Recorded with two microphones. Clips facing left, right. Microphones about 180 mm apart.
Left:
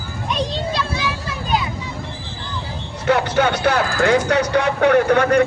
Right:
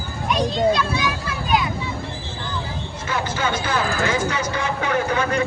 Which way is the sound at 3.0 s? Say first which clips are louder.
Left 8 dB; 65° left (ahead or behind).